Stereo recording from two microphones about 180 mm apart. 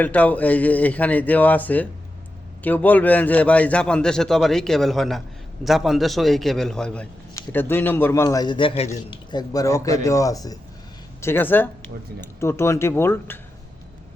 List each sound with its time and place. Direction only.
0.0 s a man's voice: 10° left (ahead or behind)